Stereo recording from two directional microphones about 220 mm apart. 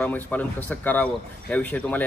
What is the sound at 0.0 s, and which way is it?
Speech, 5° left (ahead or behind).